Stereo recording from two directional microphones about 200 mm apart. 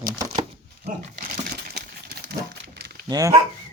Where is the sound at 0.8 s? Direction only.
40° right (ahead or behind); by 3.0 s 55° right (ahead or behind).